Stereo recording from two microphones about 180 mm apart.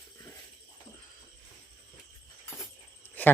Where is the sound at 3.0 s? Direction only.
10° left (ahead or behind).